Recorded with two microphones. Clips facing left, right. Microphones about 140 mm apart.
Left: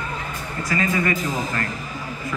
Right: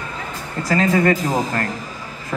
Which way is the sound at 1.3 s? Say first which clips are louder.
Right 5 dB; 40° right (ahead or behind).